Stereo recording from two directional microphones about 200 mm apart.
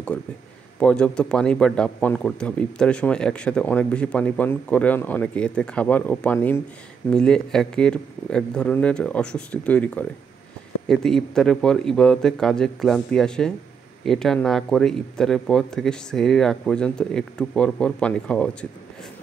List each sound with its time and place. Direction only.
0.1 s a man's voice: 5° left (ahead or behind)